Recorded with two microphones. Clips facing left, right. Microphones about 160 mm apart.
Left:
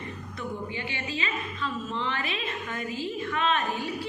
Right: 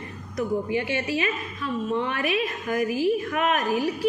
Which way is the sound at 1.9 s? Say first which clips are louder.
Right 6 dB; 60° right (ahead or behind).